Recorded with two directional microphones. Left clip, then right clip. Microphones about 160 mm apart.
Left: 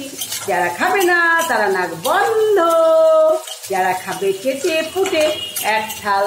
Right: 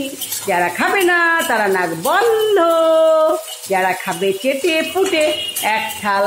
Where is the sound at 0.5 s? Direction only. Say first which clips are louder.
Right 1 dB; 55° right (ahead or behind).